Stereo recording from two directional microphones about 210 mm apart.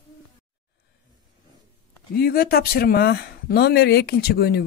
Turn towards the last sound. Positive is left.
turn(degrees=50)  # may be behind; listen again after turning